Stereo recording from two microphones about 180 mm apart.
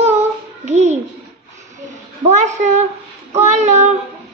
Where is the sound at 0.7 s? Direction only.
40° right (ahead or behind).